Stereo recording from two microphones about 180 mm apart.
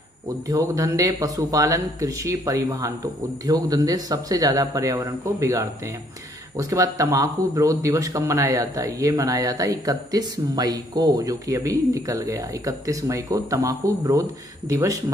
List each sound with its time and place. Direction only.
0.5 s speech: 20° right (ahead or behind)